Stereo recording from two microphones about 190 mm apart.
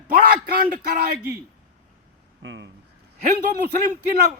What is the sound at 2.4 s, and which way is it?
Speech, 70° right (ahead or behind).